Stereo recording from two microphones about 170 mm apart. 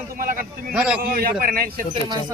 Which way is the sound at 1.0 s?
60° right (ahead or behind).